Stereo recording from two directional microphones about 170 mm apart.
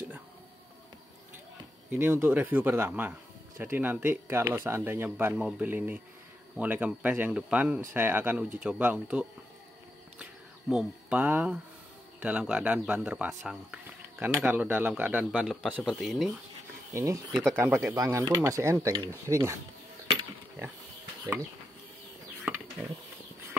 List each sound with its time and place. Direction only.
1.9 s speech: 15° right (ahead or behind)
10.7 s speech: 5° right (ahead or behind)
16.9 s speech: 15° right (ahead or behind)